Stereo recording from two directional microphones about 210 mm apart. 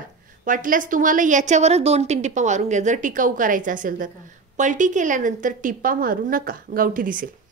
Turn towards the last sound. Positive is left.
turn(degrees=-40)  # may be behind; listen again after turning